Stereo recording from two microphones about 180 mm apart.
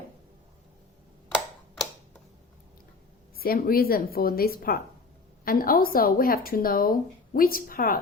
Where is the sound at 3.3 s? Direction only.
55° left (ahead or behind).